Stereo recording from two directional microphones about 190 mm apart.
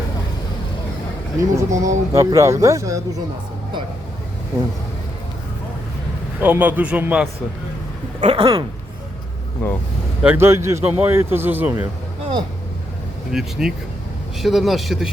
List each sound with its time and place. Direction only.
1.4 s a man's voice: 15° right (ahead or behind)
6.4 s a man's voice: 10° right (ahead or behind)
8.2 s speech: 30° right (ahead or behind)
9.6 s speech: 5° left (ahead or behind)
10.2 s a man's voice: 10° right (ahead or behind)
13.3 s speech: 5° right (ahead or behind)